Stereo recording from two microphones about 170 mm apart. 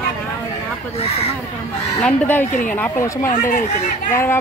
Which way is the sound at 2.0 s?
10° left (ahead or behind).